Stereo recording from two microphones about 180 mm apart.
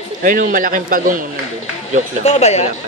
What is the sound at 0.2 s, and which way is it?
A man's voice, 45° right (ahead or behind).